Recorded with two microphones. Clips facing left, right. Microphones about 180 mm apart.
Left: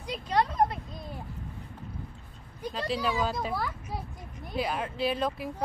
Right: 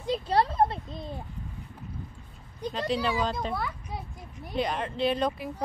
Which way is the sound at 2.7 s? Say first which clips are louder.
Right 2 dB; centre (ahead or behind).